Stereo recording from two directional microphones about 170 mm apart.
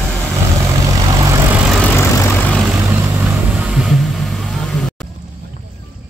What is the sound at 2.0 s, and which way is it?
Vehicle, 15° left (ahead or behind).